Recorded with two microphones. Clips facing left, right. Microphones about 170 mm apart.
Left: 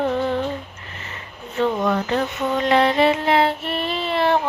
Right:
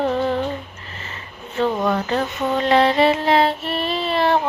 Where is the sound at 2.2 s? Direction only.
20° right (ahead or behind).